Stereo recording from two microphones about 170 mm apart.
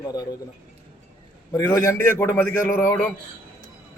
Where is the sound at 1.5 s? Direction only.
15° left (ahead or behind).